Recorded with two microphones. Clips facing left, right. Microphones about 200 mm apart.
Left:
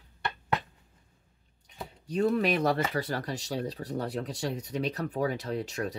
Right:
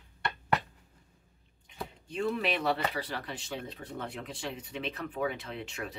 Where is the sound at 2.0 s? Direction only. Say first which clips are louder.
Left 6 dB; 40° left (ahead or behind).